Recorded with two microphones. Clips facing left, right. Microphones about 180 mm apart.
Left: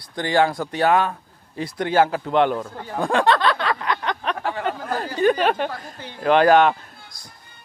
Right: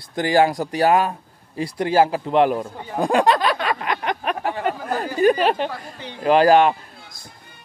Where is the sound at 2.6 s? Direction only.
15° right (ahead or behind).